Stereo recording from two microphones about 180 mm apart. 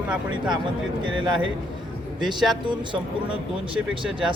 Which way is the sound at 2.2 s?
Centre (ahead or behind).